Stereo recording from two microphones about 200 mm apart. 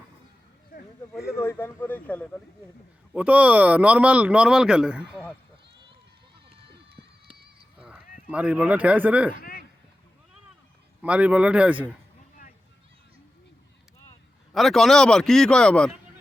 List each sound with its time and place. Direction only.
1.2 s a man's voice: 15° left (ahead or behind)
3.1 s speech: 5° right (ahead or behind)
8.3 s speech: 5° right (ahead or behind)
9.4 s a sound: 45° left (ahead or behind)
11.0 s speech: 5° right (ahead or behind)
14.5 s a man's voice: centre (ahead or behind)